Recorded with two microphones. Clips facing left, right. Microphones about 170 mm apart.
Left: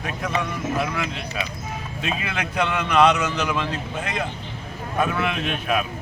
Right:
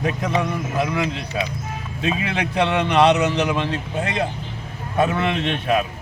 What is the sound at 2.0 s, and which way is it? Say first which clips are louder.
Speech: right 5 dB; 30° right (ahead or behind).